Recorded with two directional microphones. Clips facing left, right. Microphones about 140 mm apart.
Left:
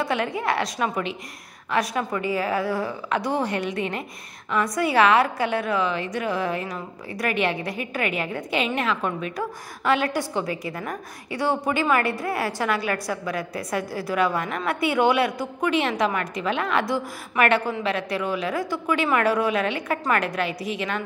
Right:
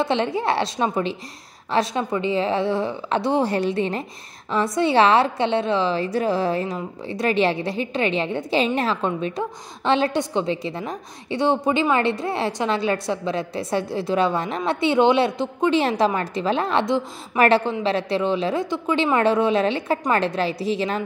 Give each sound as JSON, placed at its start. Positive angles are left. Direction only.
{"t": 0.0, "sound": "a woman's voice", "side_deg": -25}